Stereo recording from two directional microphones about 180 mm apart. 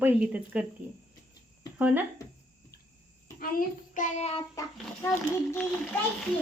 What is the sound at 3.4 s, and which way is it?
A child's voice, 50° left (ahead or behind).